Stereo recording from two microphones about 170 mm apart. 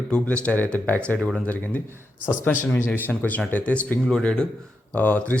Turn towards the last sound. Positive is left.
turn(degrees=10)  # may be behind; listen again after turning